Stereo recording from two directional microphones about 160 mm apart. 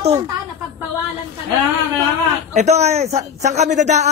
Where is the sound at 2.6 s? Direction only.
45° right (ahead or behind).